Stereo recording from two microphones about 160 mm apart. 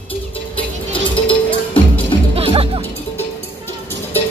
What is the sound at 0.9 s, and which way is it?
Music, 35° left (ahead or behind).